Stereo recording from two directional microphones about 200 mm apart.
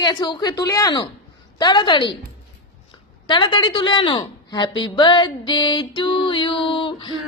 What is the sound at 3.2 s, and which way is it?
A woman's voice, 20° left (ahead or behind).